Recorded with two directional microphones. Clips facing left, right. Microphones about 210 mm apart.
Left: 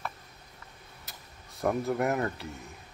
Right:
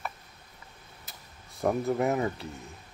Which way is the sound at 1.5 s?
Centre (ahead or behind).